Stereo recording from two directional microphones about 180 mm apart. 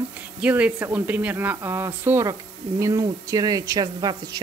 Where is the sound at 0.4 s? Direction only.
10° right (ahead or behind).